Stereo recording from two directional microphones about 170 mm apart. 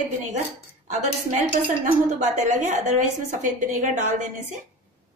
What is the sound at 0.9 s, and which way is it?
Speech, 45° right (ahead or behind).